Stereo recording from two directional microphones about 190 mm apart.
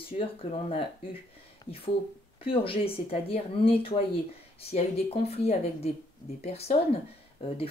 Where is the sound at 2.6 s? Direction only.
30° left (ahead or behind).